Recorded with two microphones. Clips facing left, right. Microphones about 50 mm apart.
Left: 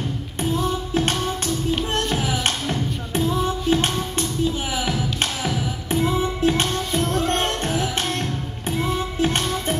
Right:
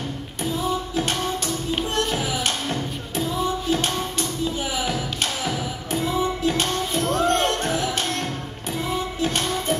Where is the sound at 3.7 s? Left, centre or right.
Left.